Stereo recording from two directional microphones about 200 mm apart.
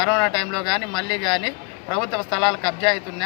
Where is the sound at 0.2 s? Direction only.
25° left (ahead or behind).